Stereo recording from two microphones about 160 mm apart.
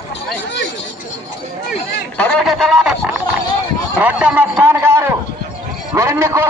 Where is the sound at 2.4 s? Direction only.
5° right (ahead or behind).